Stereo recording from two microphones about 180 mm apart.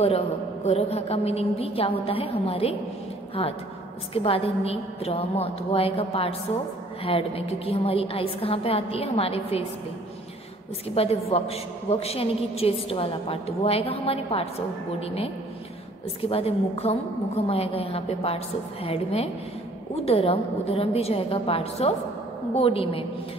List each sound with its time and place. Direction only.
0.7 s a woman's voice: 35° left (ahead or behind)
11.0 s a woman's voice: 35° left (ahead or behind)